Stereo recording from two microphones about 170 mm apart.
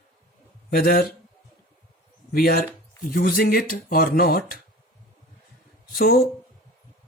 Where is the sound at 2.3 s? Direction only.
60° left (ahead or behind).